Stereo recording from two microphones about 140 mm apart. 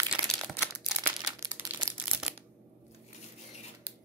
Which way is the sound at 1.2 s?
25° right (ahead or behind).